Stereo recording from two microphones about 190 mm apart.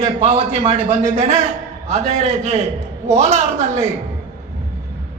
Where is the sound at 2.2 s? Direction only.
35° right (ahead or behind).